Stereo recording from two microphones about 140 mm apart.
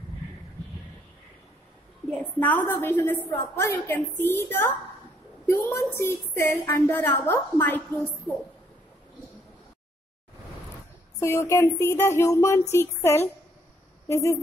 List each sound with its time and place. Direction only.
2.0 s a woman's voice: 10° left (ahead or behind)
11.1 s speech: 20° left (ahead or behind)